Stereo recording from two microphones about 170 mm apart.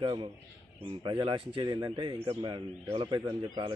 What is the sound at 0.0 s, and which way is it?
Speech, 30° right (ahead or behind).